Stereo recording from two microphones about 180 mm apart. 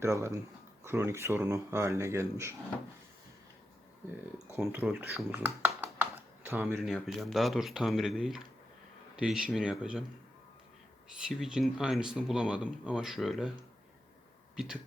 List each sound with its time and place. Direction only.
0.0 s speech: 15° right (ahead or behind)
4.5 s speech: 15° right (ahead or behind)
6.7 s speech: centre (ahead or behind)
11.3 s speech: 5° right (ahead or behind)
14.5 s speech: 5° right (ahead or behind)